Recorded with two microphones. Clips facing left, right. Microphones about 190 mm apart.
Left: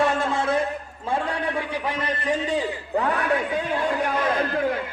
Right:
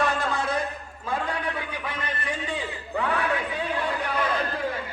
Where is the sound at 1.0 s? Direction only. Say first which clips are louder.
Left 3 dB; 30° left (ahead or behind).